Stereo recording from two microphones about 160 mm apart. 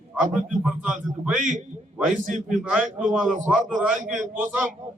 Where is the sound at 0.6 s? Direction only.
5° right (ahead or behind).